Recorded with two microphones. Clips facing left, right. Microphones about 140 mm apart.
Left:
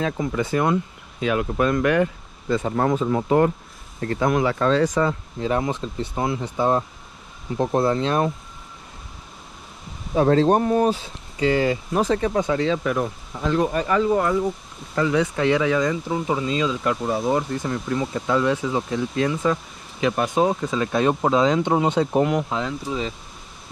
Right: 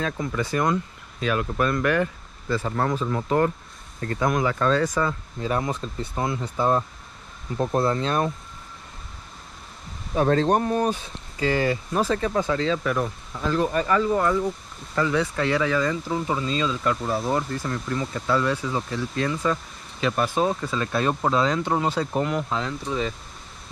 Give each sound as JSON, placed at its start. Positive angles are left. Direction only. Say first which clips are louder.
{"t": 0.0, "sound": "speech", "louder": "left 3 dB", "side_deg": 30}
{"t": 10.1, "sound": "speech", "louder": "left 3 dB", "side_deg": 25}